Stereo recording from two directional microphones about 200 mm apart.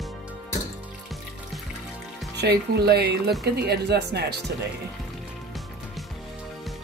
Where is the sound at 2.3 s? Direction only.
55° right (ahead or behind).